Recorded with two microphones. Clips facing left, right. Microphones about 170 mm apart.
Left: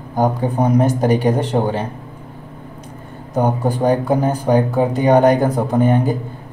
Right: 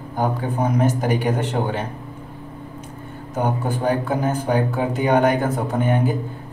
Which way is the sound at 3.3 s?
35° left (ahead or behind).